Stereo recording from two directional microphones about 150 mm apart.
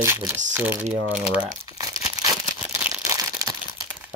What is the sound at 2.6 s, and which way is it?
Crumpling, 10° right (ahead or behind).